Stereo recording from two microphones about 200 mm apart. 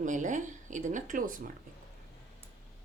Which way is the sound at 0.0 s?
40° right (ahead or behind).